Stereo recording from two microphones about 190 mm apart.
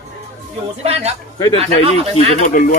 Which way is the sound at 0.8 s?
35° right (ahead or behind).